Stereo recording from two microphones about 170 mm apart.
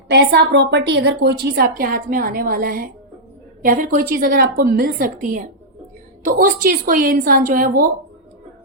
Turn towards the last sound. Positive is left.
turn(degrees=-60)  # may be behind; listen again after turning